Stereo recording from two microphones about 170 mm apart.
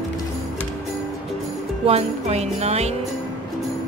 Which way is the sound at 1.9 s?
40° right (ahead or behind).